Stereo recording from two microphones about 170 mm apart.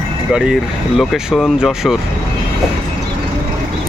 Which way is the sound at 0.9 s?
Centre (ahead or behind).